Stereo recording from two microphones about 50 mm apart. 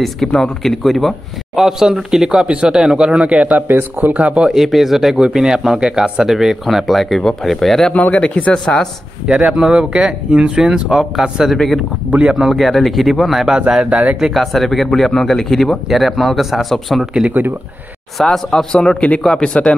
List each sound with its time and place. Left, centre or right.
0.3 s a man's voice: centre; by 4.1 s right
4.1 s speech: right
4.5 s a man's voice: centre
7.9 s speech: left
9.5 s a man's voice: centre
11.5 s speech: centre
12.1 s speech: right
12.5 s speech: centre
13.6 s a man's voice: centre
13.8 s speech: right
14.3 s speech: centre
18.2 s speech: centre